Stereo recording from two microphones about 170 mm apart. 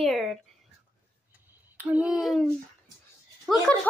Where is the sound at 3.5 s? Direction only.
Centre (ahead or behind).